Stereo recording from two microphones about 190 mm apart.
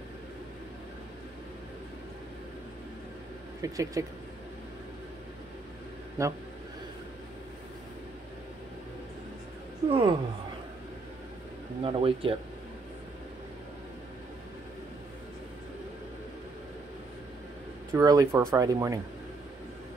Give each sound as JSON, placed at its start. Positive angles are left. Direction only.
{"t": 3.6, "sound": "speech", "side_deg": -20}
{"t": 6.2, "sound": "speech", "side_deg": -15}
{"t": 9.8, "sound": "speech", "side_deg": -25}
{"t": 11.8, "sound": "speech", "side_deg": -30}
{"t": 17.9, "sound": "speech", "side_deg": -15}